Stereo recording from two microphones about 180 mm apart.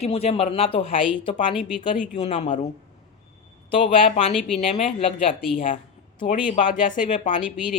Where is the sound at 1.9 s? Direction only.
40° left (ahead or behind).